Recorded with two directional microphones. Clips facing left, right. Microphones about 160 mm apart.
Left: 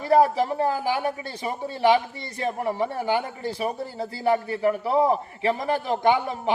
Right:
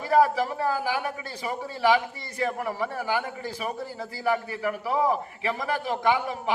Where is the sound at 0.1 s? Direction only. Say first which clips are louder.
Left 2 dB; 30° left (ahead or behind).